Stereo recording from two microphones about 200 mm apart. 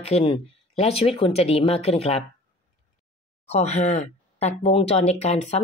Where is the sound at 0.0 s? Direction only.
30° left (ahead or behind).